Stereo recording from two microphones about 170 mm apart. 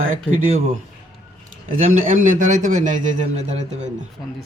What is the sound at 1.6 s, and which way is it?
A man's voice, 50° right (ahead or behind).